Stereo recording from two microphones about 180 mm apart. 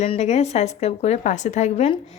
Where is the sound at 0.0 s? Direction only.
40° left (ahead or behind).